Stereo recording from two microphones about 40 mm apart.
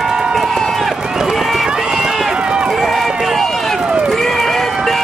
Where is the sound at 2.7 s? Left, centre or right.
Centre.